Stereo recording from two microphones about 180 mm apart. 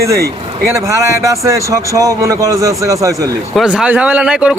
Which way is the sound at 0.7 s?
15° right (ahead or behind).